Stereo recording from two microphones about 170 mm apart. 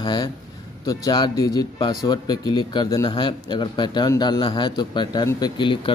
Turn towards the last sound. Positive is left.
turn(degrees=30)  # may be behind; listen again after turning